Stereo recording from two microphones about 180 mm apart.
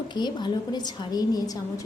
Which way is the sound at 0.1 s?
25° left (ahead or behind).